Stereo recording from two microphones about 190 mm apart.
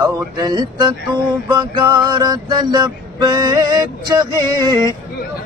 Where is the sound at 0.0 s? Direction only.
10° right (ahead or behind).